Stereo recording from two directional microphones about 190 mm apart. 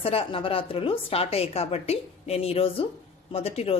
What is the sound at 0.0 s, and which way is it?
A woman's voice, 30° left (ahead or behind).